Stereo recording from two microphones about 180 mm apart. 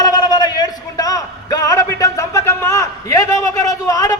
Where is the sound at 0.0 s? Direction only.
20° left (ahead or behind).